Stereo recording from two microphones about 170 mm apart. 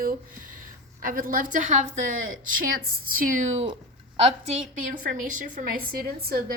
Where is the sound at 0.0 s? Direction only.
55° right (ahead or behind).